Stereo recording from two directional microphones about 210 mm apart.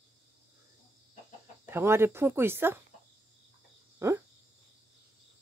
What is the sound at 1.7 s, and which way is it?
Speech, 10° right (ahead or behind).